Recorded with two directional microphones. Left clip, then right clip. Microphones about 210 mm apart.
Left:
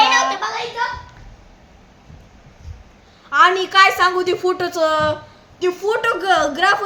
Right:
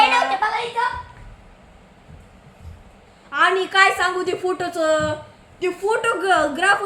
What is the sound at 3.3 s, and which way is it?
A woman's voice, 30° left (ahead or behind).